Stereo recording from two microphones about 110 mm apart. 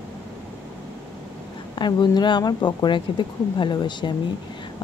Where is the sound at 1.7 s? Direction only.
45° left (ahead or behind).